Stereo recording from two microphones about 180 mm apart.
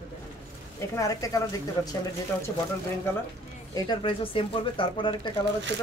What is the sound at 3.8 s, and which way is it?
Speech, 25° left (ahead or behind).